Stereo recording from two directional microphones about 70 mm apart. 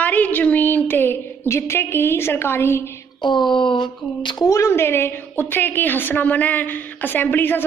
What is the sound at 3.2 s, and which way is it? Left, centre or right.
Speech, left.